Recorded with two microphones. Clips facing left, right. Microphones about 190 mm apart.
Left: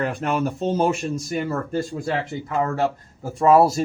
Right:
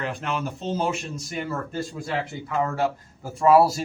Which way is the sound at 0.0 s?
50° left (ahead or behind).